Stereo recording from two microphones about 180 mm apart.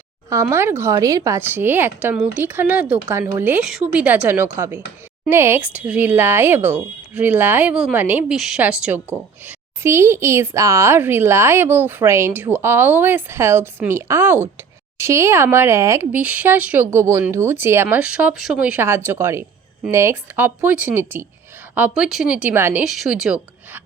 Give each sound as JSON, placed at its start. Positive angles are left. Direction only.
{"t": 0.3, "sound": "speech", "side_deg": -15}